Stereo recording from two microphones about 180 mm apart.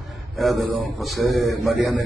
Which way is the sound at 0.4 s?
Centre (ahead or behind).